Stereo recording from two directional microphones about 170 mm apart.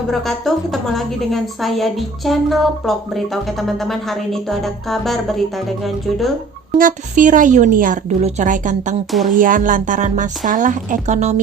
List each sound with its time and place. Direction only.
0.1 s a woman's voice: centre (ahead or behind)
6.7 s a woman's voice: 50° right (ahead or behind)